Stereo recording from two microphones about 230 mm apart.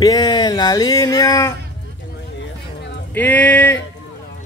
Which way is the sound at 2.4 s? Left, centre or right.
Left.